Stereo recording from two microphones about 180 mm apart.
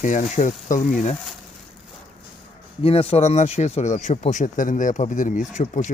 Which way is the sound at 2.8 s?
30° left (ahead or behind).